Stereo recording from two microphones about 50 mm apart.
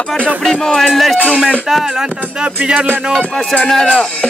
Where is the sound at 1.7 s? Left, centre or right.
Centre.